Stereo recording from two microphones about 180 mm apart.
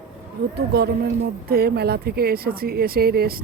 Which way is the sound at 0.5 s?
60° right (ahead or behind).